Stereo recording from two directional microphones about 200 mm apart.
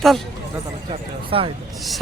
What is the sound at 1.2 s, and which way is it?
Speech, 25° right (ahead or behind).